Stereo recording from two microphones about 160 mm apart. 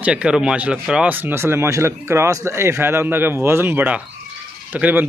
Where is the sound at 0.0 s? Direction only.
5° right (ahead or behind).